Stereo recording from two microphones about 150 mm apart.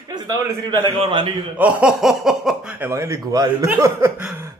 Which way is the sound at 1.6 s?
10° right (ahead or behind).